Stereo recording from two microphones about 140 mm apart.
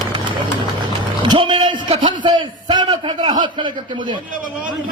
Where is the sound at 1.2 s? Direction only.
35° right (ahead or behind).